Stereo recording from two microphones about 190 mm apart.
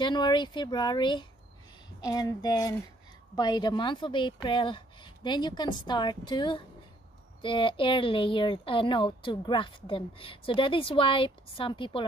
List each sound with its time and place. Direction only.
0.0 s speech: 25° left (ahead or behind)